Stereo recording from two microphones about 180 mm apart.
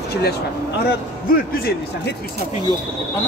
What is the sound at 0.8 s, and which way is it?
A man's voice, 60° left (ahead or behind).